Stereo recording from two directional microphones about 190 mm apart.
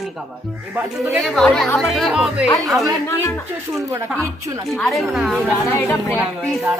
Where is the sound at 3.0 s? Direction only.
10° left (ahead or behind).